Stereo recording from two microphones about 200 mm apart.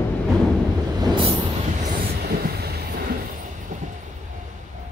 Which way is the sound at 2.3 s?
50° right (ahead or behind).